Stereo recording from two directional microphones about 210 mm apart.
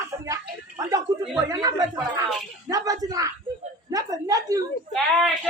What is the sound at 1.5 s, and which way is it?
Speech, 15° right (ahead or behind).